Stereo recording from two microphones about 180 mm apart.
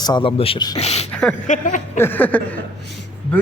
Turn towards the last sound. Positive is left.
turn(degrees=5)  # may be behind; listen again after turning